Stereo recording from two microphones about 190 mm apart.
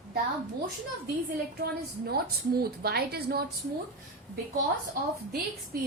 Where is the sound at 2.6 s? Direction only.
55° right (ahead or behind).